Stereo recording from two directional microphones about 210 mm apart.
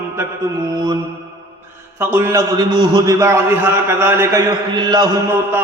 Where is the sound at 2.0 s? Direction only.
10° right (ahead or behind).